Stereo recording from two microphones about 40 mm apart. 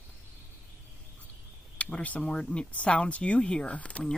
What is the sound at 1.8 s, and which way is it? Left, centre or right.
Speech, left.